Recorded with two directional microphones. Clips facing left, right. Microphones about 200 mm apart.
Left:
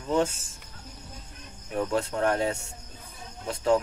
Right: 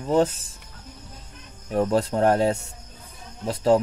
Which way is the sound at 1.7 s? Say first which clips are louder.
Right 6 dB; 35° right (ahead or behind).